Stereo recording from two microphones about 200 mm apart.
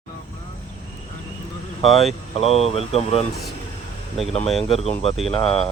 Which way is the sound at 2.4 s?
30° left (ahead or behind).